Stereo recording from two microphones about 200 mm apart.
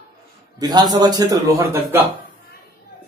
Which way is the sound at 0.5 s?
20° right (ahead or behind).